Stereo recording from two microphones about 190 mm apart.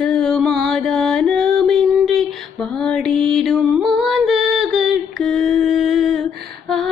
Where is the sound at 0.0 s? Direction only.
5° left (ahead or behind).